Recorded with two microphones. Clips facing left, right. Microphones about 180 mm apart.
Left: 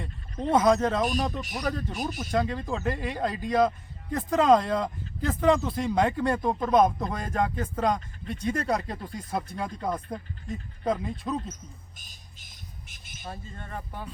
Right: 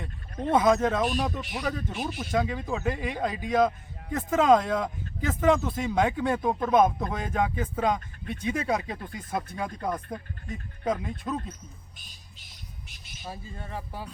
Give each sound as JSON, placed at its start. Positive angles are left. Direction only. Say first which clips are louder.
{"t": 0.5, "sound": "a man's voice", "louder": "even", "side_deg": 0}
{"t": 11.5, "sound": "squawk", "louder": "left 1 dB", "side_deg": 45}
{"t": 13.2, "sound": "speech", "louder": "right 1 dB", "side_deg": -5}